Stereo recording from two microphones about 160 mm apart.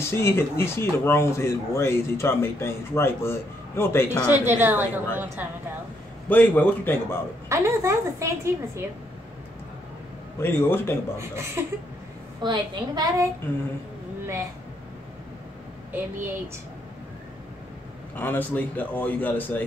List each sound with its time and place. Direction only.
0.0 s speech: 15° left (ahead or behind)
4.3 s a woman's voice: 15° right (ahead or behind)
6.2 s speech: 10° left (ahead or behind)
7.4 s a woman's voice: 15° right (ahead or behind)
10.4 s speech: 15° left (ahead or behind)
11.1 s a woman's voice: 15° right (ahead or behind)
15.9 s a woman's voice: 10° right (ahead or behind)
18.1 s speech: 10° left (ahead or behind)